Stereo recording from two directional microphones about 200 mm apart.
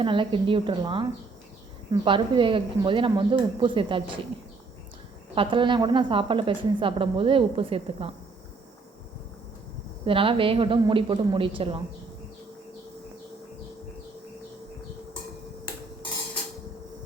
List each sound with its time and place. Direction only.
0.0 s a woman's voice: 25° right (ahead or behind)
5.3 s a woman's voice: 25° right (ahead or behind)
10.1 s a woman's voice: 25° right (ahead or behind)